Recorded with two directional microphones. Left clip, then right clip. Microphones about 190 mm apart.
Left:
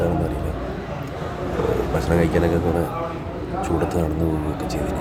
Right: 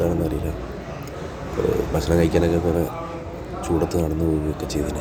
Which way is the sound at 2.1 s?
15° right (ahead or behind).